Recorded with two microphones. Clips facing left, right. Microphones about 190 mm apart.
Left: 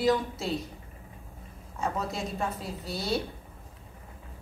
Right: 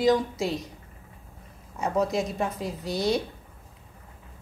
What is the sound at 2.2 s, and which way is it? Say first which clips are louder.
A woman's voice: right 4 dB; 20° right (ahead or behind).